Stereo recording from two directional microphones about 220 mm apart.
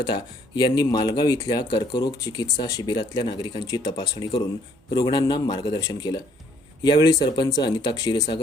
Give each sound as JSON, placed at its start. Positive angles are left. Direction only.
{"t": 0.0, "sound": "speech", "side_deg": 20}